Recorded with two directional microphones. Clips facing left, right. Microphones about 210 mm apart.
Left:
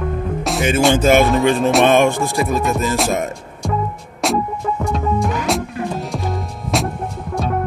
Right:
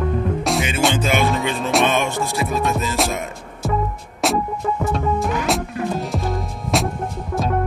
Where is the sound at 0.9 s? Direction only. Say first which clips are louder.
Left 6 dB; 45° left (ahead or behind).